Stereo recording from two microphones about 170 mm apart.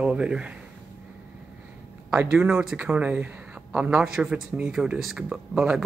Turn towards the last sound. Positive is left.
turn(degrees=-5)  # may be behind; listen again after turning